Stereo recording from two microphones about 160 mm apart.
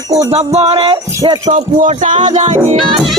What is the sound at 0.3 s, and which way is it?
Speech, 40° right (ahead or behind).